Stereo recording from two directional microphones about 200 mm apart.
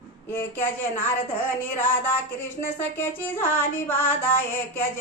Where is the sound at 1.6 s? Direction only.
10° left (ahead or behind).